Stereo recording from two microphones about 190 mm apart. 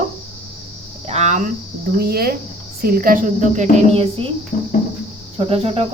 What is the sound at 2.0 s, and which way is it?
A woman's voice, 55° right (ahead or behind).